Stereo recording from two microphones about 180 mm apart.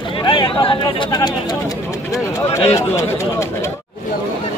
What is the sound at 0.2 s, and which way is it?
Speech, 25° left (ahead or behind).